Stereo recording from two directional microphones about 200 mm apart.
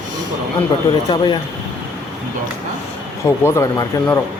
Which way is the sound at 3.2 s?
15° left (ahead or behind).